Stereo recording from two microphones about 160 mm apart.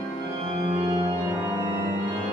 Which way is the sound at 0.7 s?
35° right (ahead or behind).